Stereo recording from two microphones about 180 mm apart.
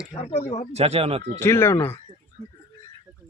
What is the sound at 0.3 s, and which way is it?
Speech, 35° left (ahead or behind).